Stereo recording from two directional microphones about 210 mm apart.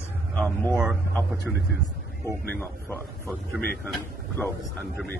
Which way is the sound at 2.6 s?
10° left (ahead or behind).